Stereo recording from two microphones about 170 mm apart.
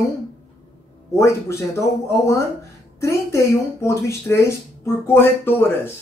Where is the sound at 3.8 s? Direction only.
15° left (ahead or behind).